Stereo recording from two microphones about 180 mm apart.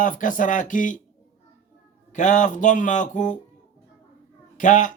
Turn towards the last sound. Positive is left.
turn(degrees=45)  # may be behind; listen again after turning